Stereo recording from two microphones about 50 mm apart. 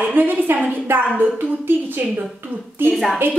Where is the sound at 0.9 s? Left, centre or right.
Right.